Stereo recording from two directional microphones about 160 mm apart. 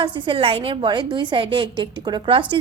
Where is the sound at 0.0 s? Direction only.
30° right (ahead or behind).